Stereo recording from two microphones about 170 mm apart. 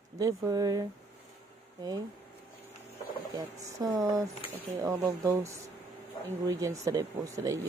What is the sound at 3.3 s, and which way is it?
Speech, 20° right (ahead or behind).